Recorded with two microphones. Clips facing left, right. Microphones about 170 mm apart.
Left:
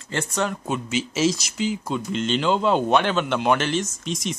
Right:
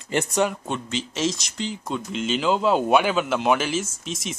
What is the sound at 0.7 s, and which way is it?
Speech, 5° left (ahead or behind).